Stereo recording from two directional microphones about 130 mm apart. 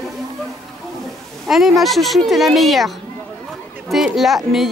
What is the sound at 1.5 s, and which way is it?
Speech, centre (ahead or behind).